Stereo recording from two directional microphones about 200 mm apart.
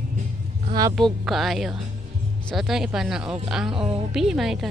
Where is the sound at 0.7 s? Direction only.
20° right (ahead or behind).